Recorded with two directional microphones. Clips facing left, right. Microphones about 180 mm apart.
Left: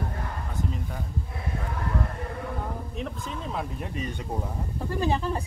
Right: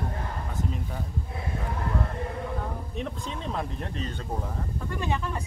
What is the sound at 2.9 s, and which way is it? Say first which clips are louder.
Speech: even; centre (ahead or behind).